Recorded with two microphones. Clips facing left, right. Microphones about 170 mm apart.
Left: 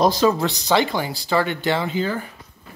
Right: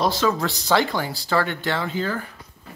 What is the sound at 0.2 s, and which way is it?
Speech, 25° left (ahead or behind).